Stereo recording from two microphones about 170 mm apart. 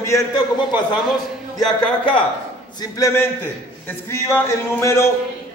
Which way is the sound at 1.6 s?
5° left (ahead or behind).